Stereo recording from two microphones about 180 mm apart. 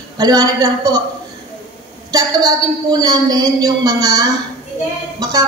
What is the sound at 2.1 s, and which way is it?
A woman's voice, 20° right (ahead or behind).